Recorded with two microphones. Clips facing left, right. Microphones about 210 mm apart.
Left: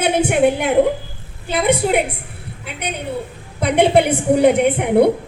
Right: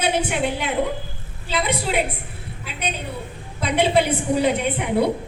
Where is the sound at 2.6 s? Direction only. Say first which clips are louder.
Left 4 dB; 65° left (ahead or behind).